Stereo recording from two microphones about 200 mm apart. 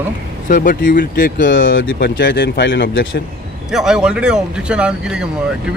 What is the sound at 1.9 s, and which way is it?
Speech, 60° left (ahead or behind).